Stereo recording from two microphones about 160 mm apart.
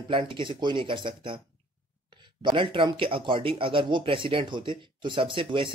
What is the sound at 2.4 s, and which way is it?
Speech, 30° right (ahead or behind).